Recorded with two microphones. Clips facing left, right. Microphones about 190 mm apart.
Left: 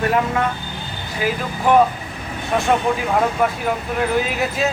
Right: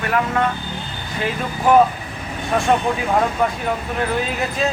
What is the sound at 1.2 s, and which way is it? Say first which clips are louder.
Speech: even; centre (ahead or behind).